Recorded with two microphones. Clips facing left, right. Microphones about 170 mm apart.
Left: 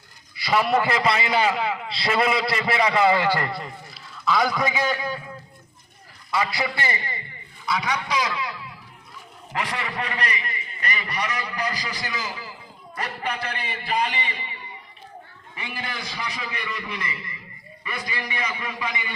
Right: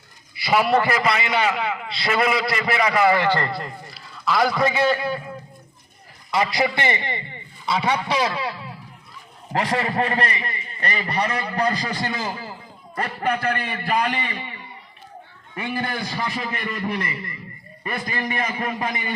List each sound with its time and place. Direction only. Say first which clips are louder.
0.4 s a man's voice: right 2 dB; 10° right (ahead or behind)
0.8 s a man's voice: right 1 dB; 25° left (ahead or behind); by 5.3 s 5° right (ahead or behind)
6.5 s a man's voice: right 5 dB; 20° right (ahead or behind)
11.8 s a man's voice: right 5 dB; 50° right (ahead or behind)
15.5 s a man's voice: right 7 dB; 55° right (ahead or behind)